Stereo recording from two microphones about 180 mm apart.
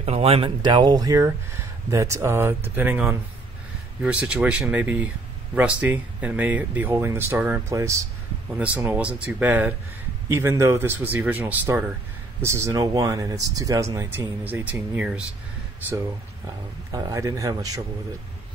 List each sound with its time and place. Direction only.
0.0 s speech: 35° right (ahead or behind); by 15.2 s 5° right (ahead or behind)
16.4 s a man's voice: 20° right (ahead or behind)